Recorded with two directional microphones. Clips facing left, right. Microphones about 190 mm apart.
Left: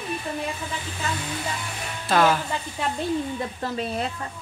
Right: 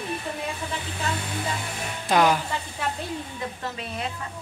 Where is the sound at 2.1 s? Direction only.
15° right (ahead or behind).